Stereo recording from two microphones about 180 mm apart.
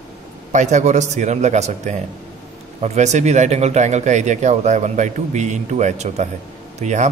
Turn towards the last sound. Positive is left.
turn(degrees=-40)  # may be behind; listen again after turning